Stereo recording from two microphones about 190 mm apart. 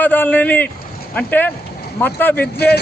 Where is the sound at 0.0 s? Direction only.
10° left (ahead or behind).